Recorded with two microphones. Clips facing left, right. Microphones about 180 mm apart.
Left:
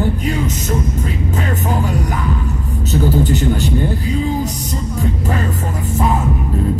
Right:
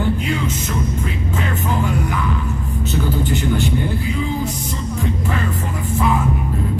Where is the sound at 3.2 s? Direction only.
40° left (ahead or behind).